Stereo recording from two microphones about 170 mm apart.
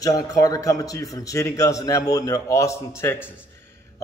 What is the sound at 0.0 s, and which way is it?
A man's voice, 20° left (ahead or behind).